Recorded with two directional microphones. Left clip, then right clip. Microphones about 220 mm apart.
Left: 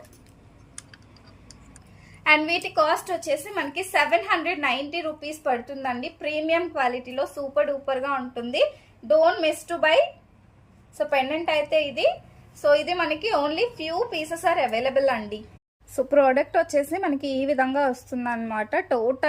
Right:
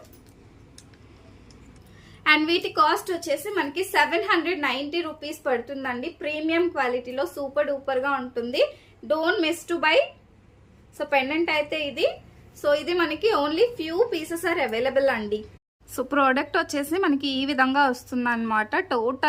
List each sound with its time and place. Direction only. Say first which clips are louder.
2.2 s a woman's voice: even; 15° right (ahead or behind)
16.0 s a woman's voice: left 3 dB; 45° right (ahead or behind)
18.2 s a woman's voice: right 7 dB; 55° right (ahead or behind)